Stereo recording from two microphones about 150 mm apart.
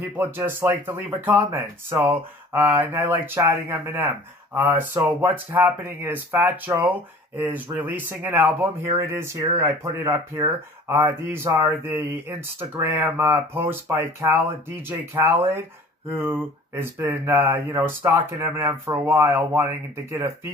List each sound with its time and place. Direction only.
0.2 s speech: 15° right (ahead or behind)